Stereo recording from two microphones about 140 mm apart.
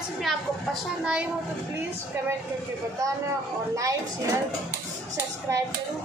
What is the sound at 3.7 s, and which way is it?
Speech, 25° right (ahead or behind).